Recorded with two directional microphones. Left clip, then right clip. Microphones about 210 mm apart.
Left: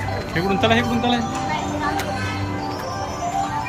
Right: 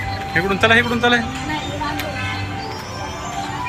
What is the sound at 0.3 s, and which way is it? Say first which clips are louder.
Speech: right 4 dB; 5° left (ahead or behind).